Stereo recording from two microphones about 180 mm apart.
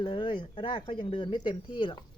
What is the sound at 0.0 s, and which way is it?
A woman's voice, 25° left (ahead or behind).